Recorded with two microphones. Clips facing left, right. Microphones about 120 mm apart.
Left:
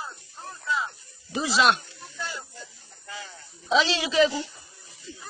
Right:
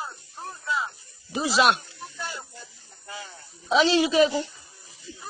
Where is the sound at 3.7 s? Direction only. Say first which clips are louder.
Right 3 dB; 45° right (ahead or behind).